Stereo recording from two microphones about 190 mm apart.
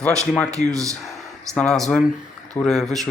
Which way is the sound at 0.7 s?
15° right (ahead or behind).